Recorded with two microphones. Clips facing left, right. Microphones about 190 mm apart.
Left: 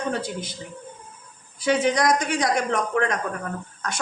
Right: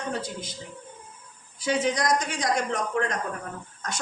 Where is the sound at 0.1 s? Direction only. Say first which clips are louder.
Left 4 dB; 65° left (ahead or behind).